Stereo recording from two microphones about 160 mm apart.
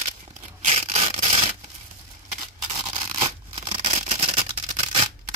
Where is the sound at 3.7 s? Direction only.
35° right (ahead or behind).